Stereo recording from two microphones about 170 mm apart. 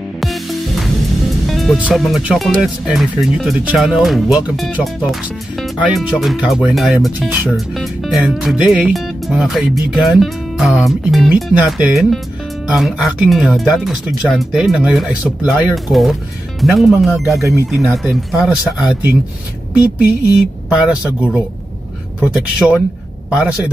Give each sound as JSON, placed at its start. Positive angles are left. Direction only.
{"t": 0.2, "sound": "music", "side_deg": 0}
{"t": 1.5, "sound": "speech", "side_deg": 0}
{"t": 17.4, "sound": "speech", "side_deg": -15}
{"t": 17.8, "sound": "speech", "side_deg": 0}